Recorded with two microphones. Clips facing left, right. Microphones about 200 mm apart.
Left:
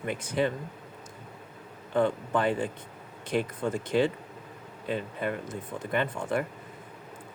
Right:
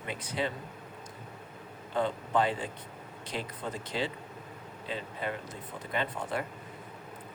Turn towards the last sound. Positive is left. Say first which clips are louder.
# left 5 dB
turn(degrees=50)  # may be behind; listen again after turning